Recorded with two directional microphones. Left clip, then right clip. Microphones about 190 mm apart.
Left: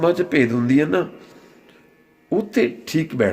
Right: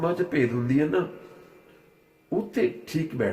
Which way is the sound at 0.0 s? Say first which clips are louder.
Left 7 dB; 55° left (ahead or behind).